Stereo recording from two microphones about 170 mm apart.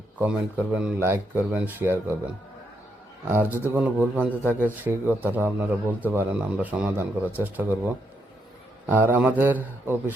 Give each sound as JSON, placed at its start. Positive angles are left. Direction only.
{"t": 0.2, "sound": "a man's voice", "side_deg": -10}
{"t": 3.2, "sound": "a man's voice", "side_deg": -10}
{"t": 8.9, "sound": "a man's voice", "side_deg": -10}